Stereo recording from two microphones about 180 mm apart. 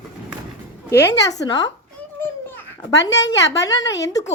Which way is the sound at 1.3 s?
20° left (ahead or behind).